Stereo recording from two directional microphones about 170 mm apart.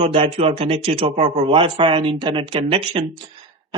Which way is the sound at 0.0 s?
35° right (ahead or behind).